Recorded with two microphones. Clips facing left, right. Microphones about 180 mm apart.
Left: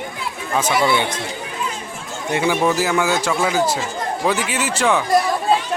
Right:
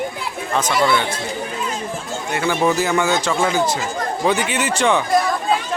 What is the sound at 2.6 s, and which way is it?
Speech, 5° left (ahead or behind).